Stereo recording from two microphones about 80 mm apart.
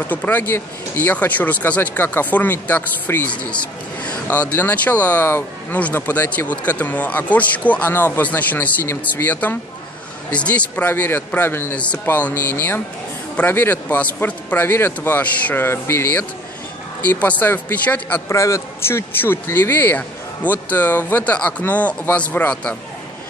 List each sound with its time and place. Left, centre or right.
0.0 s speech: left
4.0 s speech: centre
11.7 s a man's voice: centre
15.6 s speech: left
18.3 s a man's voice: left; by 22.8 s centre